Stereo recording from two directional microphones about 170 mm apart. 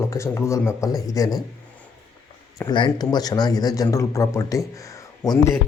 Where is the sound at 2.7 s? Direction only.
25° left (ahead or behind).